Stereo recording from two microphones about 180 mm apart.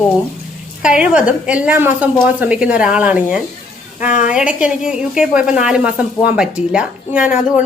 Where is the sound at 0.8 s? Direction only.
5° right (ahead or behind).